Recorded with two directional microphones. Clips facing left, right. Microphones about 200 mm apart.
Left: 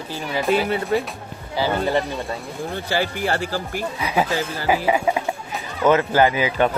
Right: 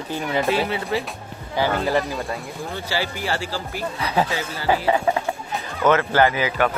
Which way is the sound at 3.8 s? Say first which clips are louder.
Right 1 dB; 10° left (ahead or behind).